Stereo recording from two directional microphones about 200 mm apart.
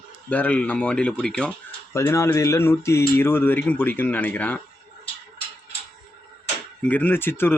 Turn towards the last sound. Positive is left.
turn(degrees=10)  # may be behind; listen again after turning